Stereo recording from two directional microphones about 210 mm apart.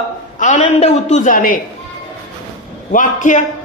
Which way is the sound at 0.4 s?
35° left (ahead or behind).